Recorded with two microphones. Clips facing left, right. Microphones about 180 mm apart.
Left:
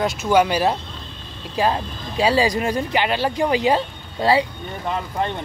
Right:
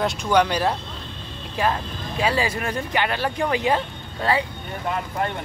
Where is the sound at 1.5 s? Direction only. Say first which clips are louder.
Left 3 dB; 25° left (ahead or behind).